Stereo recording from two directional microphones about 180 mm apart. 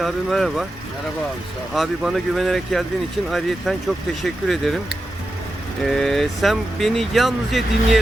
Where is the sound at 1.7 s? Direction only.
Centre (ahead or behind).